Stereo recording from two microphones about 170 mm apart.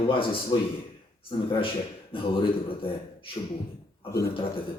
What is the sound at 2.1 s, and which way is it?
A man's voice, 30° left (ahead or behind).